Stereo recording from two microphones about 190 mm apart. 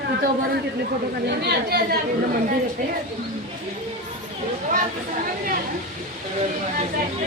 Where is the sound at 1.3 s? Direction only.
60° right (ahead or behind).